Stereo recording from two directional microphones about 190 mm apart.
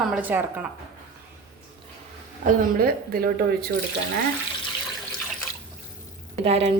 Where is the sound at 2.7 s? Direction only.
50° right (ahead or behind).